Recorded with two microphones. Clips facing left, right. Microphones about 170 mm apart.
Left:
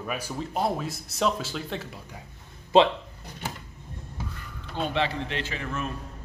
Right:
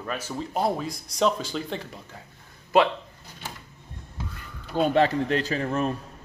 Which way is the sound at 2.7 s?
25° left (ahead or behind).